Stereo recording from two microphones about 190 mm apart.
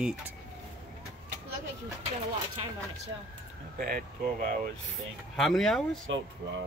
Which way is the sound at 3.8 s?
50° right (ahead or behind).